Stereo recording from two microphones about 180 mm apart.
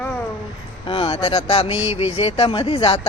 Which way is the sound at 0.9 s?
30° left (ahead or behind).